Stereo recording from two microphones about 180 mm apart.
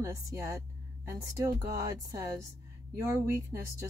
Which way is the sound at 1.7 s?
20° right (ahead or behind).